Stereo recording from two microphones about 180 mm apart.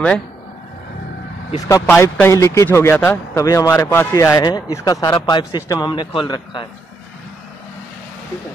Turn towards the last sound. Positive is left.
turn(degrees=25)  # may be behind; listen again after turning